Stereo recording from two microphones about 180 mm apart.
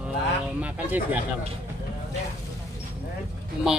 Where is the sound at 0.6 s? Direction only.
10° right (ahead or behind).